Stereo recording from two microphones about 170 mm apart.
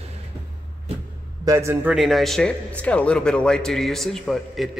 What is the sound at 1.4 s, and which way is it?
Speech, 15° right (ahead or behind).